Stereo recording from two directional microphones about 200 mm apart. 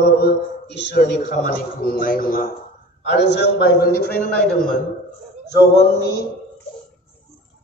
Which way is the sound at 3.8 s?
45° left (ahead or behind).